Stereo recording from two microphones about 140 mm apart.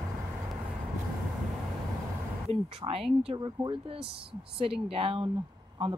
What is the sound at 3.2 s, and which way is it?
Speech, 30° right (ahead or behind).